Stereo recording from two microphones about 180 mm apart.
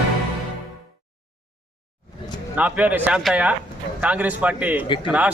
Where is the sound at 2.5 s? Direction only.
10° right (ahead or behind).